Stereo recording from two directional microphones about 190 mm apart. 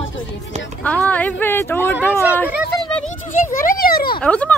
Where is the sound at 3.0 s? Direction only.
45° left (ahead or behind).